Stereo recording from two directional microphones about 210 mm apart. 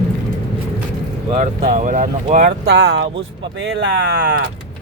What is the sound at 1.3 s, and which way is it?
Speech, 35° right (ahead or behind).